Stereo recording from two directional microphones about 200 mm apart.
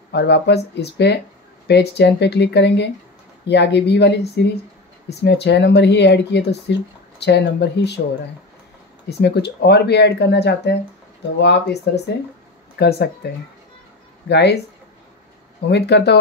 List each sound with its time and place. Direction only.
0.1 s speech: 55° left (ahead or behind)
9.2 s speech: 55° left (ahead or behind)
14.3 s speech: 60° left (ahead or behind)
15.7 s speech: 55° left (ahead or behind)